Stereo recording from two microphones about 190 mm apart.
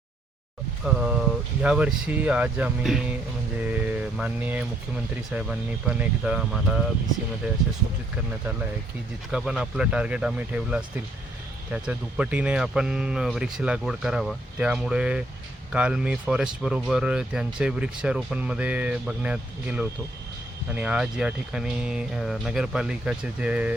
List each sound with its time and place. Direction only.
0.9 s speech: 5° right (ahead or behind)
9.3 s speech: 5° right (ahead or behind)